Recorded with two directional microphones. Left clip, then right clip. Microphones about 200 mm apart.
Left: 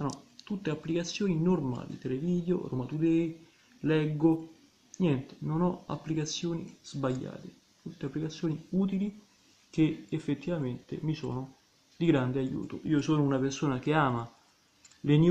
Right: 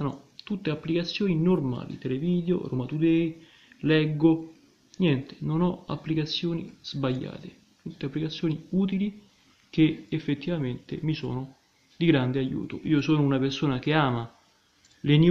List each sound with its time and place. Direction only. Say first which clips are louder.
0.0 s speech: right 3 dB; 10° right (ahead or behind)